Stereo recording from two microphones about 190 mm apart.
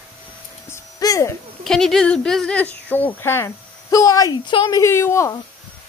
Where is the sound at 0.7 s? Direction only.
15° left (ahead or behind).